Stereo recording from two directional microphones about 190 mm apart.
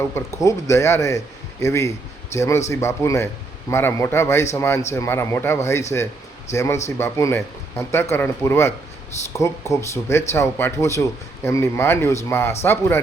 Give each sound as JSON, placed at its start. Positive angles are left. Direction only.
{"t": 0.4, "sound": "speech", "side_deg": 15}